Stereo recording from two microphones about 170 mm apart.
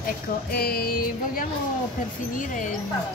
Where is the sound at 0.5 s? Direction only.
65° left (ahead or behind).